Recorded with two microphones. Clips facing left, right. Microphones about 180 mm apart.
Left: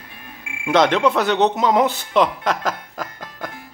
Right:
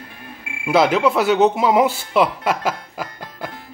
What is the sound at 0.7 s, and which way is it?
Speech, 5° right (ahead or behind).